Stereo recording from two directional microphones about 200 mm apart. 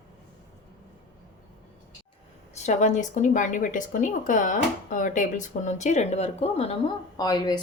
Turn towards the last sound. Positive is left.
turn(degrees=20)  # may be behind; listen again after turning